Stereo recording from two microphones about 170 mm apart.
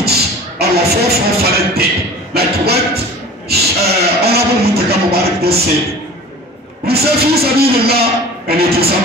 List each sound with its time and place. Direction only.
0.0 s music: 70° right (ahead or behind)
2.3 s a man's voice: 70° right (ahead or behind)
3.4 s a sound: 70° right (ahead or behind)
6.9 s a man's voice: 65° right (ahead or behind)